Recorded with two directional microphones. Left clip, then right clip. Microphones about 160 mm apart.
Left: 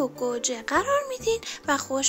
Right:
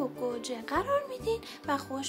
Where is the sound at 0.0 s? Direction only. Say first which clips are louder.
Left 7 dB; 30° left (ahead or behind).